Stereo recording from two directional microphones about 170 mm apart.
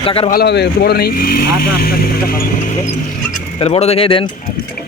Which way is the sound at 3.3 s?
45° left (ahead or behind).